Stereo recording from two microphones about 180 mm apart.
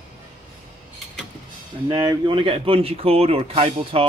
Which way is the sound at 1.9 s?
20° right (ahead or behind).